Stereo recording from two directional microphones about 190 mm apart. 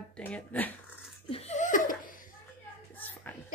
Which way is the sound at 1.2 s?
30° left (ahead or behind).